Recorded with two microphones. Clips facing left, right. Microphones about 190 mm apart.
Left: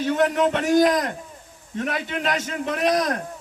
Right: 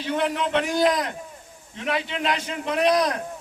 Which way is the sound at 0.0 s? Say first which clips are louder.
Left 5 dB; 45° left (ahead or behind).